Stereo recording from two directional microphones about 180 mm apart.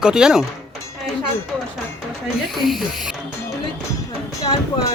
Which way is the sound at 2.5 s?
Centre (ahead or behind).